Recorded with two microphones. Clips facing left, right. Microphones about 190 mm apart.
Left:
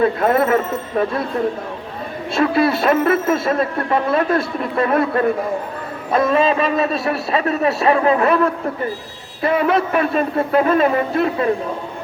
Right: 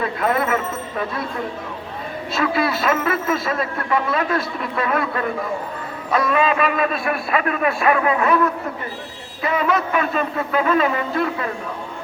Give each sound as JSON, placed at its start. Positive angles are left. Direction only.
{"t": 0.0, "sound": "speech", "side_deg": 30}
{"t": 2.3, "sound": "a man's voice", "side_deg": 30}
{"t": 9.4, "sound": "speech", "side_deg": 30}